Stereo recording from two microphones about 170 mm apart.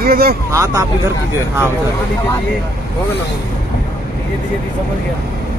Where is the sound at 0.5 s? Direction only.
15° right (ahead or behind).